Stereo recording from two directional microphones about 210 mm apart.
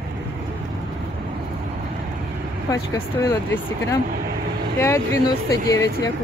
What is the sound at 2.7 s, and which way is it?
Speech, 15° left (ahead or behind).